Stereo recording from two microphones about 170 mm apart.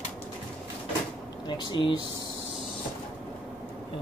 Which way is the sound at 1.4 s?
25° left (ahead or behind).